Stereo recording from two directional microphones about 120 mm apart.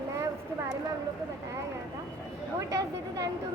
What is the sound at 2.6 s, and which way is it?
Speech, 25° right (ahead or behind).